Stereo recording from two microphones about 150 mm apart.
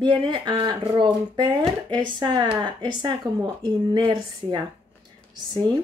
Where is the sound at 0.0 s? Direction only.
30° right (ahead or behind).